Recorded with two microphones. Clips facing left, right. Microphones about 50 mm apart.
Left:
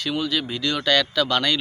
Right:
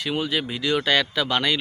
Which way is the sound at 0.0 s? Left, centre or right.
Right.